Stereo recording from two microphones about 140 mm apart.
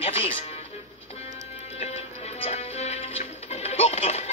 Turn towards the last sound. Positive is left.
turn(degrees=50)  # may be behind; listen again after turning